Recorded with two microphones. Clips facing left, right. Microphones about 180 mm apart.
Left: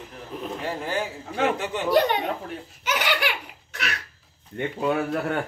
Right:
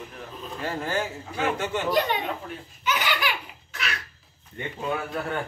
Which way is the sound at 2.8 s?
70° left (ahead or behind).